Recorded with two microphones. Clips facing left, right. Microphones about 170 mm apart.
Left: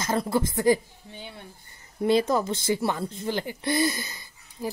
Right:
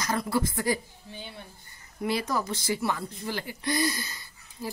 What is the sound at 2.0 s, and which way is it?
A woman's voice, 25° left (ahead or behind).